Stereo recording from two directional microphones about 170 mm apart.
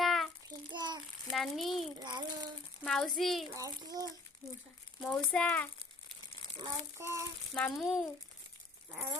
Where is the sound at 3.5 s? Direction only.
20° right (ahead or behind).